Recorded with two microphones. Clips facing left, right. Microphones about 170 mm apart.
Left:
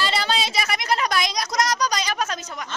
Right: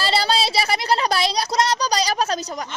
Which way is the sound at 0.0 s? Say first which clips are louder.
Right 3 dB; 35° right (ahead or behind).